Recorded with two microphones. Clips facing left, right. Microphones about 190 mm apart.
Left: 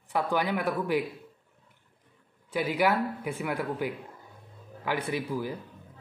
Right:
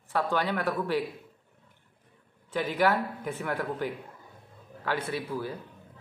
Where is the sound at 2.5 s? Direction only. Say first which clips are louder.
Even; 10° left (ahead or behind).